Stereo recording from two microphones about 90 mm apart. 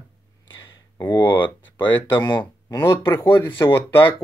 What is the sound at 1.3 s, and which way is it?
Speech, 60° left (ahead or behind).